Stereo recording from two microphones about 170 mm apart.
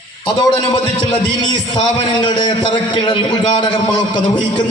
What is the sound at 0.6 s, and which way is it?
A man's voice, 25° left (ahead or behind).